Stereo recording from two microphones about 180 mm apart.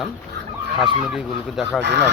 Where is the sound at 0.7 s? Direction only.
Centre (ahead or behind).